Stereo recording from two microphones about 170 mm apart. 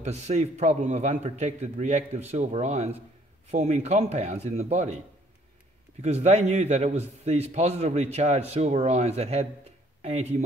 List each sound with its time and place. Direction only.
0.0 s a man's voice: 40° right (ahead or behind)
6.0 s a man's voice: 40° right (ahead or behind)